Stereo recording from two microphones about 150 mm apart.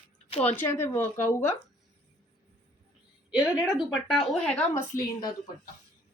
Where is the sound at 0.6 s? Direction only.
15° left (ahead or behind).